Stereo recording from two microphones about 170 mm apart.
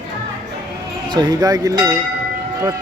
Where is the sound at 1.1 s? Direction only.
25° right (ahead or behind).